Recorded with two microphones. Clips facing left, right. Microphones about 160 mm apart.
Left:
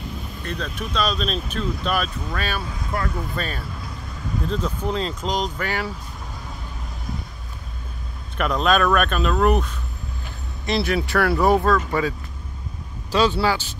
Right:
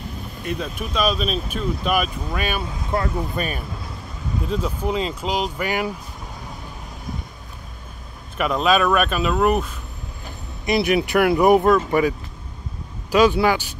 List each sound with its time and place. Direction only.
0.5 s speech: 10° right (ahead or behind)
2.9 s speech: 25° right (ahead or behind)
3.3 s speech: 15° right (ahead or behind)
8.4 s speech: 5° right (ahead or behind)
10.6 s speech: 15° right (ahead or behind)
13.1 s speech: 15° right (ahead or behind)